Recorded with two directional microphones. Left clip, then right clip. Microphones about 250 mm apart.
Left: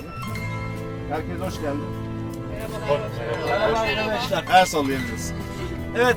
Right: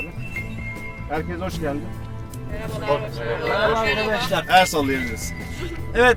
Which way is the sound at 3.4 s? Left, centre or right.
Centre.